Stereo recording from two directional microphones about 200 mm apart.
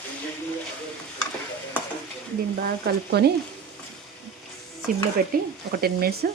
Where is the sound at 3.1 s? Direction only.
55° right (ahead or behind).